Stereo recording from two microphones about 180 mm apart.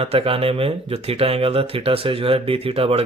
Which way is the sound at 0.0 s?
30° right (ahead or behind).